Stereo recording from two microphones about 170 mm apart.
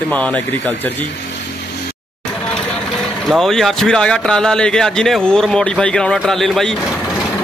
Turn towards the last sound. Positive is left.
turn(degrees=0)  # may be behind; listen again after turning